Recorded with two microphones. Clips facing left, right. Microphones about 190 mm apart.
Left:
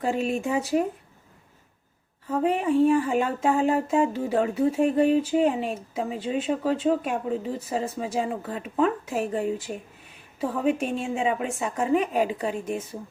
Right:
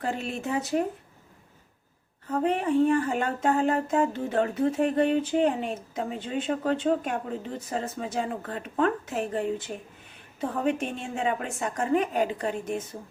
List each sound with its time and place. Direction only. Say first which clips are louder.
0.2 s speech: left 7 dB; 40° left (ahead or behind)
0.4 s speech: left 3 dB; 10° left (ahead or behind)
2.4 s speech: left 2 dB; 5° left (ahead or behind)